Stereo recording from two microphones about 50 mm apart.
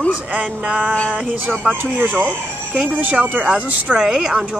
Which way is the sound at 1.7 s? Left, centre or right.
Right.